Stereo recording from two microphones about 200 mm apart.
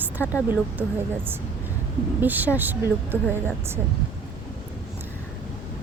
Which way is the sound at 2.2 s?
10° right (ahead or behind).